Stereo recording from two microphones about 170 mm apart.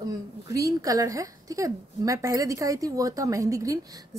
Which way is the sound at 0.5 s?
20° right (ahead or behind).